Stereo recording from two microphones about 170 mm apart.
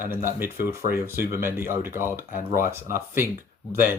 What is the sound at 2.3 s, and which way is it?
Speech, 55° left (ahead or behind).